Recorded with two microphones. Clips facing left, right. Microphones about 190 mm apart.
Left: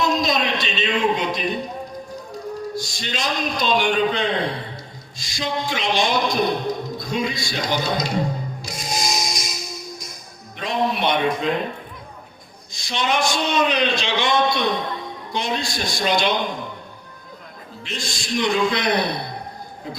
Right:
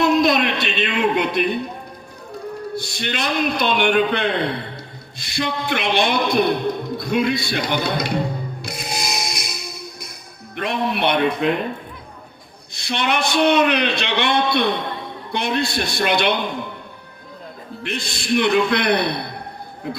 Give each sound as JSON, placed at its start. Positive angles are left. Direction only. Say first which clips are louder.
{"t": 0.0, "sound": "a sound", "louder": "right 5 dB", "side_deg": -60}
{"t": 2.7, "sound": "a man's voice", "louder": "right 3 dB", "side_deg": -60}
{"t": 8.6, "sound": "music", "louder": "left 2 dB", "side_deg": -60}
{"t": 10.6, "sound": "a man's voice", "louder": "right 1 dB", "side_deg": -60}
{"t": 12.7, "sound": "a man's voice", "louder": "right 1 dB", "side_deg": -60}
{"t": 17.8, "sound": "a man's voice", "louder": "right 6 dB", "side_deg": -60}